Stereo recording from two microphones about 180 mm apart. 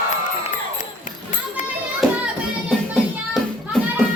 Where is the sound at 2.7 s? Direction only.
Centre (ahead or behind).